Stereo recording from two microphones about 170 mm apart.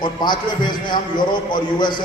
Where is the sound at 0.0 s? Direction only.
25° left (ahead or behind).